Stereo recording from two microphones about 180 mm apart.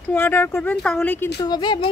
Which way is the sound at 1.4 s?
25° left (ahead or behind).